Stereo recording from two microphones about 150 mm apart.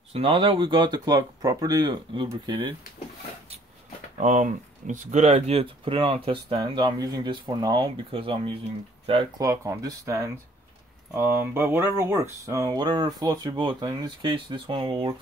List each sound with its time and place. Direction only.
0.1 s speech: 40° right (ahead or behind)
4.2 s speech: 55° right (ahead or behind); by 9.3 s 35° right (ahead or behind)
9.4 s speech: 20° right (ahead or behind)